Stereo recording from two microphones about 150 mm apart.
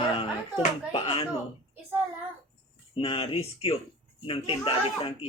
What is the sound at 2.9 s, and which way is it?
Speech, 35° left (ahead or behind).